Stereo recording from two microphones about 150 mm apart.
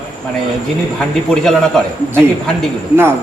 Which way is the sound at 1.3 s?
5° left (ahead or behind).